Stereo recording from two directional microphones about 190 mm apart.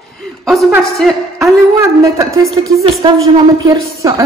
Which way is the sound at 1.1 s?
Centre (ahead or behind).